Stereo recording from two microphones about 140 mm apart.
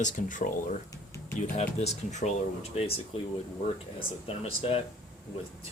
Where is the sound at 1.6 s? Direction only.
55° left (ahead or behind).